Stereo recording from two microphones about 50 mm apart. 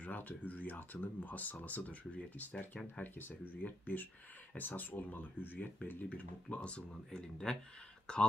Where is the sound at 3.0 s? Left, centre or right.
Left.